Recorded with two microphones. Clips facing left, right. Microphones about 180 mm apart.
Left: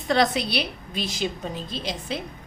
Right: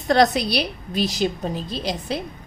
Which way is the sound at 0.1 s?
40° right (ahead or behind).